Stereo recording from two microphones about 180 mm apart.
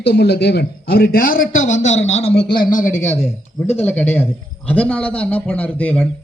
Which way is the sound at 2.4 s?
25° left (ahead or behind).